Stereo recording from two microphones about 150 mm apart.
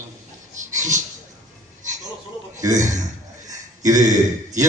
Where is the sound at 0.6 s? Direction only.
55° right (ahead or behind).